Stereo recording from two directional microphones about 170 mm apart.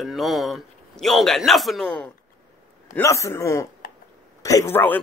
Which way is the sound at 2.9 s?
15° left (ahead or behind).